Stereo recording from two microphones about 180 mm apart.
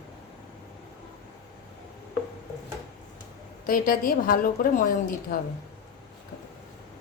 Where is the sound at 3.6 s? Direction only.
50° left (ahead or behind).